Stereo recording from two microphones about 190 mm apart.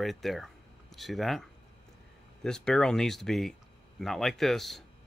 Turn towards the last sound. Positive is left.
turn(degrees=0)  # may be behind; listen again after turning